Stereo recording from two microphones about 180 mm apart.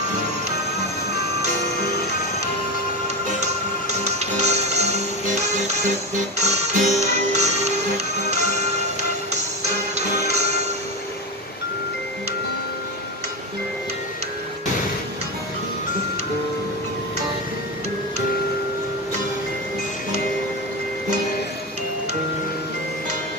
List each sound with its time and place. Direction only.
4.0 s music: 40° right (ahead or behind)
6.4 s music: 40° right (ahead or behind)